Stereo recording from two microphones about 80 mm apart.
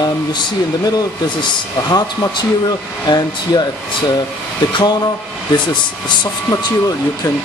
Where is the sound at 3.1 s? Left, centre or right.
Left.